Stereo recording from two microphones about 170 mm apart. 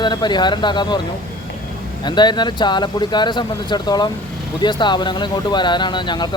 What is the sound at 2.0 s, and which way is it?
Speech, 25° left (ahead or behind).